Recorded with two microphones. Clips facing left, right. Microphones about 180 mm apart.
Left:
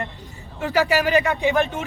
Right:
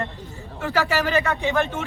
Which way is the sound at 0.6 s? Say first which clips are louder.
Left 3 dB; 15° left (ahead or behind).